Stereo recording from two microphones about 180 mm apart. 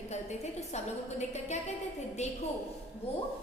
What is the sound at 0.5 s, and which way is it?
A woman's voice, 40° left (ahead or behind).